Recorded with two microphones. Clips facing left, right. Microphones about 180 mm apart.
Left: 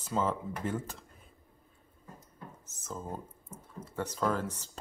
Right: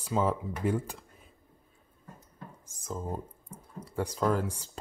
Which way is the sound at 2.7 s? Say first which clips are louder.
Right 4 dB; 10° right (ahead or behind).